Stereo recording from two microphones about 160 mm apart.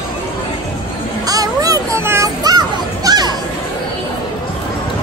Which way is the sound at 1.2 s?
20° right (ahead or behind).